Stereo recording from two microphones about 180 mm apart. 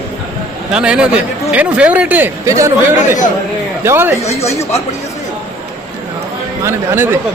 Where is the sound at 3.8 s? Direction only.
10° right (ahead or behind).